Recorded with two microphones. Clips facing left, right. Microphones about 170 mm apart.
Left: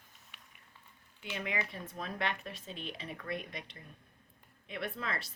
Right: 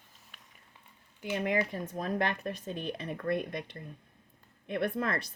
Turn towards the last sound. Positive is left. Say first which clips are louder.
# right 8 dB
turn(degrees=-50)  # may be behind; listen again after turning